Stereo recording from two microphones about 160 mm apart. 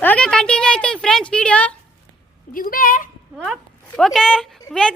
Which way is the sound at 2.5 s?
60° left (ahead or behind).